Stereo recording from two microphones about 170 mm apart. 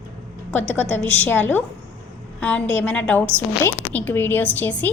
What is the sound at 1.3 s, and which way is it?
A woman's voice, 10° left (ahead or behind).